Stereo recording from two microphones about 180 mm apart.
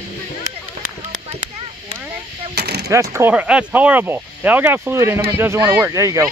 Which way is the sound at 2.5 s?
65° right (ahead or behind).